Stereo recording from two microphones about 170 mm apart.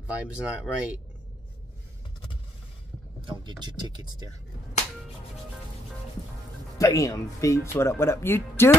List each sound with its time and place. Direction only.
0.0 s speech: 5° right (ahead or behind)
3.2 s speech: 30° right (ahead or behind)
6.8 s speech: 20° left (ahead or behind)